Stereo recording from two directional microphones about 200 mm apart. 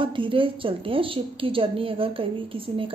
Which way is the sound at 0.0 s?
25° right (ahead or behind).